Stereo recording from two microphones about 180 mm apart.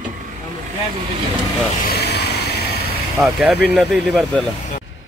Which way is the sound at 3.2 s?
Centre (ahead or behind).